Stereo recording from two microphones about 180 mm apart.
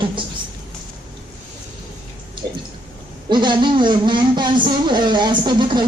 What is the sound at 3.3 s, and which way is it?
Speech, 25° right (ahead or behind).